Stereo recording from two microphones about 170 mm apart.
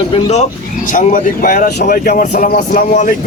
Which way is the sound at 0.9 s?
50° left (ahead or behind).